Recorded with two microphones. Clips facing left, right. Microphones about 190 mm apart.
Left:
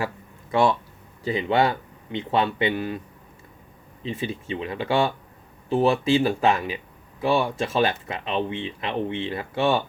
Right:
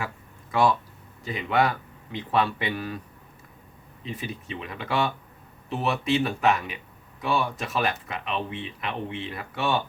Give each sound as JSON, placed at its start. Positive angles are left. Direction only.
{"t": 0.5, "sound": "speech", "side_deg": 25}
{"t": 4.0, "sound": "speech", "side_deg": 25}